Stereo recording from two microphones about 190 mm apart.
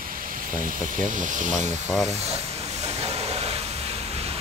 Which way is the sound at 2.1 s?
35° right (ahead or behind).